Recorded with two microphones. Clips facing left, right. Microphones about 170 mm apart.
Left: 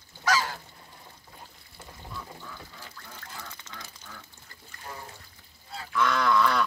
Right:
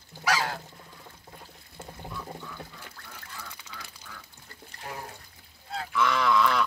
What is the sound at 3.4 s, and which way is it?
Duck, 10° right (ahead or behind).